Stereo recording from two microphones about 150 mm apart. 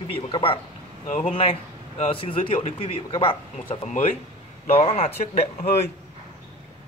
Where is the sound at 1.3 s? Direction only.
40° left (ahead or behind).